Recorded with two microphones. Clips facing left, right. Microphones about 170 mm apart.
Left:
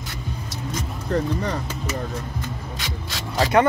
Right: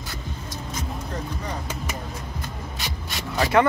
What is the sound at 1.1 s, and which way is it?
Speech, 70° left (ahead or behind).